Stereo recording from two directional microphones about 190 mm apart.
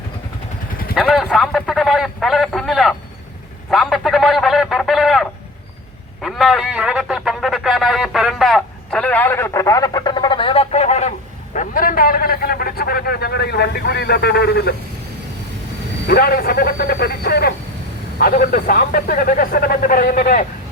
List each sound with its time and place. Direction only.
0.9 s a sound: 5° right (ahead or behind)
6.2 s a man's voice: centre (ahead or behind); by 14.8 s 60° left (ahead or behind)
16.0 s a man's voice: 50° left (ahead or behind)